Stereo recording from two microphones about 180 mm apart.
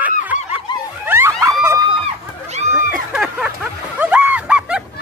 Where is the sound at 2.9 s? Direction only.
5° right (ahead or behind).